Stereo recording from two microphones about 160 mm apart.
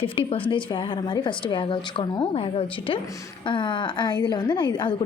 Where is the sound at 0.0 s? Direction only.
35° left (ahead or behind).